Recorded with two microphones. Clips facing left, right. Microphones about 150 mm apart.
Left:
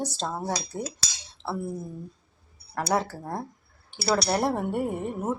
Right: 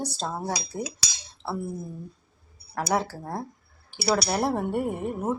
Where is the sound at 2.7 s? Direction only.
Centre (ahead or behind).